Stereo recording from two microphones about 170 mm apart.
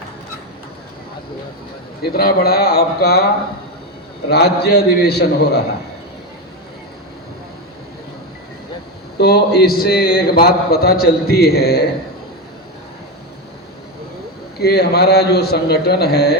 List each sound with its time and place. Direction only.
2.0 s a man's voice: 65° left (ahead or behind)
4.3 s a man's voice: 75° left (ahead or behind)
9.1 s a man's voice: 70° left (ahead or behind)
14.6 s a man's voice: 70° left (ahead or behind)